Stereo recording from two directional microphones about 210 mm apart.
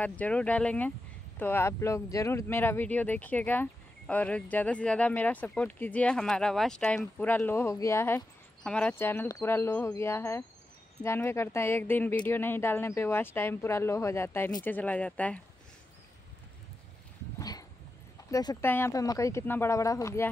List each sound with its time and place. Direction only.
0.0 s speech: 5° left (ahead or behind)
17.4 s dog: 15° left (ahead or behind)
18.3 s speech: 15° left (ahead or behind)